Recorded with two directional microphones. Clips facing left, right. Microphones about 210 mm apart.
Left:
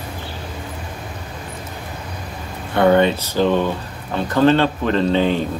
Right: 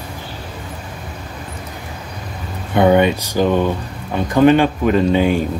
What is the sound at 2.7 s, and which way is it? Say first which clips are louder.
Speech: right 1 dB; 15° right (ahead or behind).